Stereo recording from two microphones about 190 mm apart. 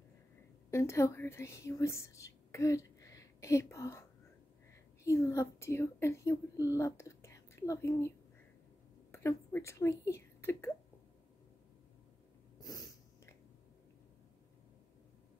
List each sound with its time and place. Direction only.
0.7 s speech: 15° left (ahead or behind)
5.0 s speech: 15° left (ahead or behind)
9.1 s speech: 15° left (ahead or behind)
12.5 s snort: 20° left (ahead or behind)